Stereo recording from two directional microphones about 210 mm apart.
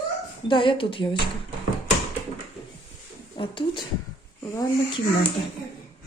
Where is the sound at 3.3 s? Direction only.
25° left (ahead or behind).